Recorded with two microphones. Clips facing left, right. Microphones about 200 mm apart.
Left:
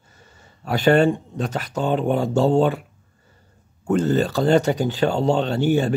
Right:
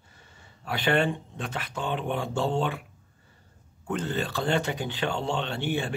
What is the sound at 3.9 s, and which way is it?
Speech, 40° left (ahead or behind).